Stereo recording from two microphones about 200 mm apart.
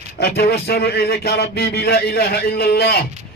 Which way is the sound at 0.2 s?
55° left (ahead or behind).